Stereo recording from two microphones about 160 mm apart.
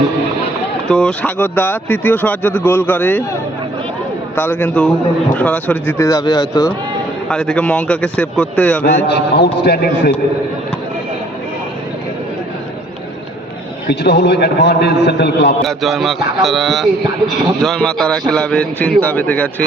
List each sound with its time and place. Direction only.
0.9 s speech: 5° left (ahead or behind)
4.4 s speech: 10° left (ahead or behind)
6.1 s speech: 25° left (ahead or behind)
7.3 s speech: 5° left (ahead or behind)
8.8 s a man's voice: 90° left
13.9 s a man's voice: 90° left
15.6 s a man's voice: centre (ahead or behind)